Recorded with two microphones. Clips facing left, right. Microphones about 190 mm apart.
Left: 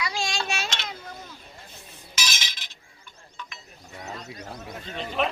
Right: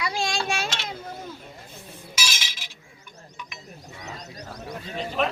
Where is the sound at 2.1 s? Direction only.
5° right (ahead or behind).